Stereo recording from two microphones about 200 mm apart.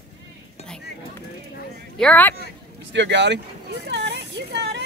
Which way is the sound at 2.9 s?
60° right (ahead or behind).